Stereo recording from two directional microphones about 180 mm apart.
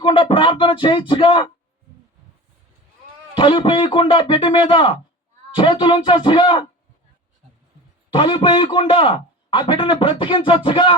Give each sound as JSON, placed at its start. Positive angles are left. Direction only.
{"t": 0.0, "sound": "a sound", "side_deg": 30}
{"t": 3.3, "sound": "a man's voice", "side_deg": 25}
{"t": 8.1, "sound": "a man's voice", "side_deg": 25}